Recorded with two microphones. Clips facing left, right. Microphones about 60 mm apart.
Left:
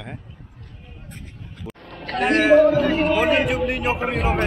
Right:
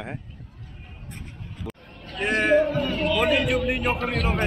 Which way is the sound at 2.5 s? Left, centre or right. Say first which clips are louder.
Left 8 dB; left.